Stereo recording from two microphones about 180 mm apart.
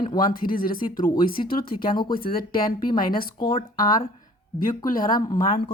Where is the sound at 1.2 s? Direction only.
55° left (ahead or behind).